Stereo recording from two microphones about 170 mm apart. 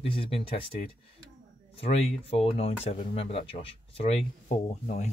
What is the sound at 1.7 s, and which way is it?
Speech, 35° left (ahead or behind).